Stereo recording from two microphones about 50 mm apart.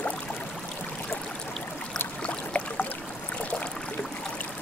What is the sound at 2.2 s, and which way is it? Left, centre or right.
Boat, left.